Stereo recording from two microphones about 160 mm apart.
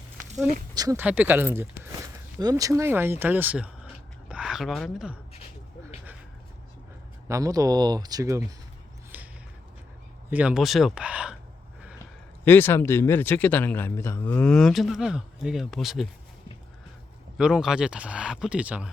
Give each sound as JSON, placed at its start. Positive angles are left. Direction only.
{"t": 0.7, "sound": "speech", "side_deg": -20}
{"t": 1.0, "sound": "a woman's voice", "side_deg": -10}
{"t": 7.3, "sound": "speech", "side_deg": -20}
{"t": 9.1, "sound": "a sound", "side_deg": -10}
{"t": 10.2, "sound": "speech", "side_deg": -10}
{"t": 12.5, "sound": "speech", "side_deg": 15}
{"t": 17.3, "sound": "speech", "side_deg": -5}